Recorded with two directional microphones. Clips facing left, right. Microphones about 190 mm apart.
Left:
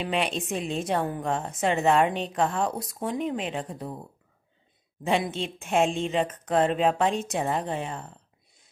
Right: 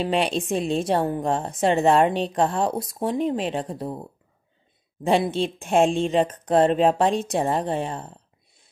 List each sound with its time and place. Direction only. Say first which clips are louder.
0.0 s a woman's voice: right 5 dB; 35° right (ahead or behind)